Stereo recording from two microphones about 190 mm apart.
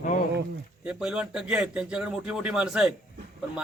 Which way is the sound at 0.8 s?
5° right (ahead or behind).